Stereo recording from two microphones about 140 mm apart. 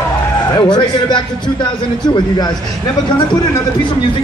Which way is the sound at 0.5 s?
30° left (ahead or behind).